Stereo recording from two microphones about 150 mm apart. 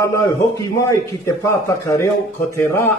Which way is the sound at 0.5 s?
20° left (ahead or behind).